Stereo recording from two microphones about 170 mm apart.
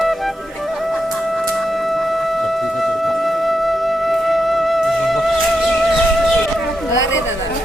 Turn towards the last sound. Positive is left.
turn(degrees=90)